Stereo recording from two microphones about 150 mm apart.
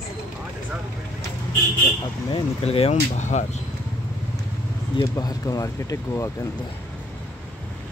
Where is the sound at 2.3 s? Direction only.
40° left (ahead or behind).